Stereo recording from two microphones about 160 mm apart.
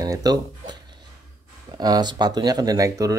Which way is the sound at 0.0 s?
25° right (ahead or behind).